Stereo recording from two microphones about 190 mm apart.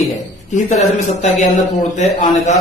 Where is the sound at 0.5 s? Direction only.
40° left (ahead or behind).